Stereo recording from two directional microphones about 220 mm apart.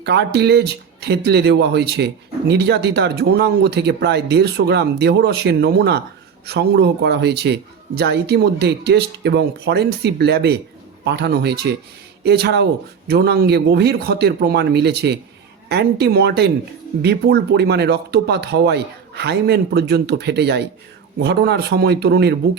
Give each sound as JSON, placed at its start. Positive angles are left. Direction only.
{"t": 0.0, "sound": "speech", "side_deg": -50}